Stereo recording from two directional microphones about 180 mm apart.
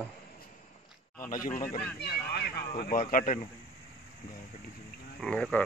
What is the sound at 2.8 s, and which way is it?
Speech, 50° left (ahead or behind).